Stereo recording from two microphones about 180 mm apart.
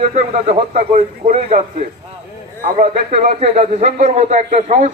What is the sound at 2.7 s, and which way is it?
Speech, 35° right (ahead or behind).